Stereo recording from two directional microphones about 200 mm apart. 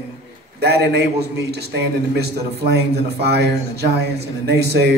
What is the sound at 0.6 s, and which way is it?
A man's voice, 55° right (ahead or behind).